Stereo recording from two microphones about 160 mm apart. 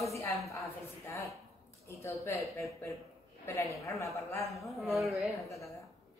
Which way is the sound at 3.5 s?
20° left (ahead or behind).